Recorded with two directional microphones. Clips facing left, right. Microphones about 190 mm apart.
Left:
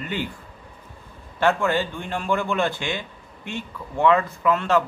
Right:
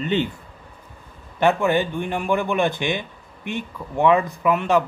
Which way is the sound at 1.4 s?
15° right (ahead or behind).